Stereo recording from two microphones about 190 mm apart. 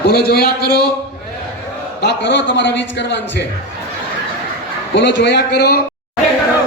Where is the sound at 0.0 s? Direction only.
55° left (ahead or behind).